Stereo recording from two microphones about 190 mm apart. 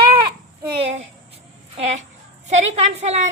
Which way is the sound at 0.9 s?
35° right (ahead or behind).